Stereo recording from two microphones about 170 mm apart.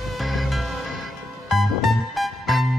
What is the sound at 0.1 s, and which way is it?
Music, centre (ahead or behind).